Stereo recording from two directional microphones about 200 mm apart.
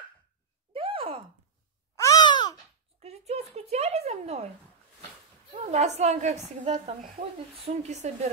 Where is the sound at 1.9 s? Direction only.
15° left (ahead or behind).